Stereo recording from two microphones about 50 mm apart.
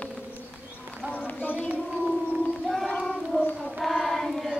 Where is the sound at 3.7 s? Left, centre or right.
Centre.